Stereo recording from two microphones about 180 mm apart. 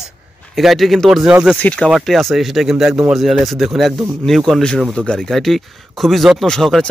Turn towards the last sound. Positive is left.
turn(degrees=0)  # may be behind; listen again after turning